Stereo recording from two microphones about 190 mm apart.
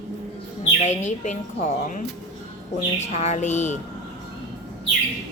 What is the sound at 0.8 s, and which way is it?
Speech, 40° left (ahead or behind).